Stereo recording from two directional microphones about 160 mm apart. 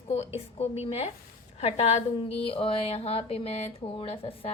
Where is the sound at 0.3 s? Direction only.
40° left (ahead or behind).